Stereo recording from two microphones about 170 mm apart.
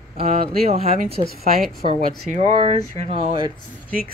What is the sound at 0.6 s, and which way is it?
Speech, 35° right (ahead or behind).